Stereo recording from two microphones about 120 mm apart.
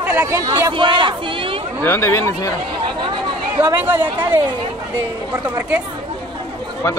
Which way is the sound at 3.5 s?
20° right (ahead or behind).